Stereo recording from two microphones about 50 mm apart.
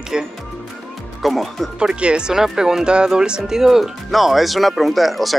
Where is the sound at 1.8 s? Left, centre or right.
Centre.